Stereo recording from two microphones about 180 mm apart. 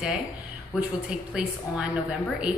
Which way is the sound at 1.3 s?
5° right (ahead or behind).